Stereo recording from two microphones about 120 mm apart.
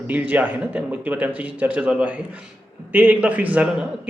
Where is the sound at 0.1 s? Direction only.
15° right (ahead or behind).